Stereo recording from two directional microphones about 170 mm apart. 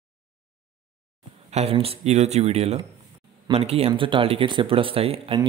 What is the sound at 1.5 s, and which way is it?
Speech, 35° right (ahead or behind).